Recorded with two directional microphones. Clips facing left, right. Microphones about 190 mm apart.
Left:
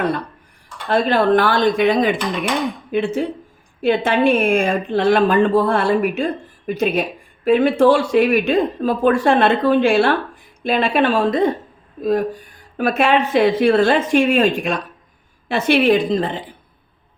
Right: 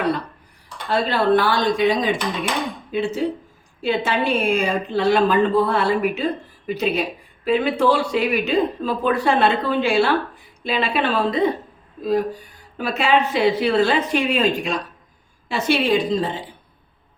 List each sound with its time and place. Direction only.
0.9 s a woman's voice: 50° left (ahead or behind)
12.7 s a woman's voice: 55° left (ahead or behind)